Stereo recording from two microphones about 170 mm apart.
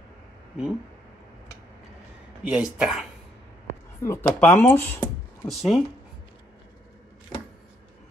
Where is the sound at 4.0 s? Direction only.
15° left (ahead or behind).